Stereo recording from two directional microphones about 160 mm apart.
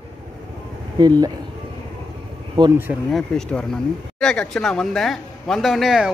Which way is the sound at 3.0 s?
Centre (ahead or behind).